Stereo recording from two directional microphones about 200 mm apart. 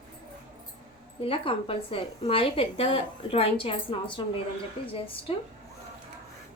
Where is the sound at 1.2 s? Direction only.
25° left (ahead or behind).